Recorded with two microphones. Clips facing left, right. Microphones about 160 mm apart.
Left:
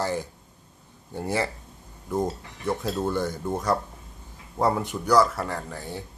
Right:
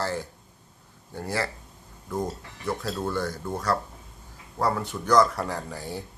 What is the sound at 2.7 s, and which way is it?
Speech, 20° left (ahead or behind).